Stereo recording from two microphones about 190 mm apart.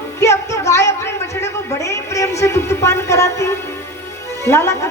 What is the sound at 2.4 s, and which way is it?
A woman's voice, 15° left (ahead or behind).